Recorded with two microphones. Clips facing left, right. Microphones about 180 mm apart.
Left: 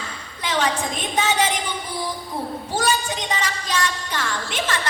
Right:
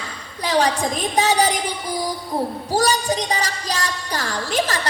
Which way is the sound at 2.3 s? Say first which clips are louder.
Right 7 dB; 40° right (ahead or behind).